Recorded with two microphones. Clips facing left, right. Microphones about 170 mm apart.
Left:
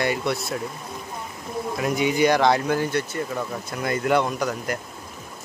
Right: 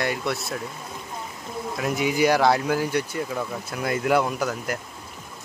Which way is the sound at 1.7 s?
Centre (ahead or behind).